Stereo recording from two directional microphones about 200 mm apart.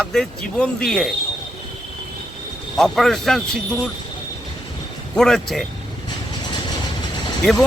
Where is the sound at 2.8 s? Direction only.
Centre (ahead or behind).